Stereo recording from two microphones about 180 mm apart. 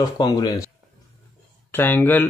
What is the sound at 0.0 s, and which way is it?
Speech, 20° left (ahead or behind).